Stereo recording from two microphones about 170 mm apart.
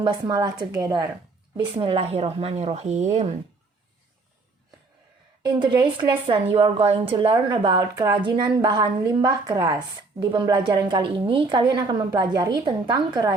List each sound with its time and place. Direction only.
0.0 s speech: 25° right (ahead or behind)
1.5 s speech: 30° right (ahead or behind)
5.4 s speech: 25° right (ahead or behind)